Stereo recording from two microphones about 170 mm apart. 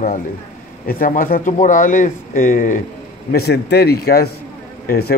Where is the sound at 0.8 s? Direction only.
55° left (ahead or behind).